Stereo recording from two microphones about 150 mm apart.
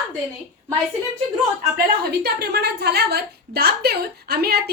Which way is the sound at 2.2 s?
90° right.